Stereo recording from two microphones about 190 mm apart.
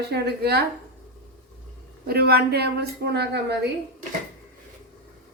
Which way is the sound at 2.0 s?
55° right (ahead or behind).